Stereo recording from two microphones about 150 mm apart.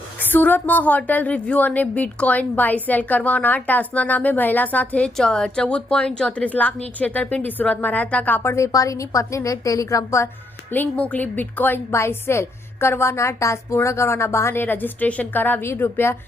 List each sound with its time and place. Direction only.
0.2 s a woman's voice: 10° left (ahead or behind)